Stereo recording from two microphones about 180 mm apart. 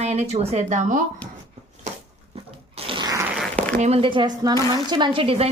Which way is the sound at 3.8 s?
35° right (ahead or behind).